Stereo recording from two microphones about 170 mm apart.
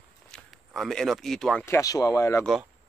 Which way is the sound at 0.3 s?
Centre (ahead or behind).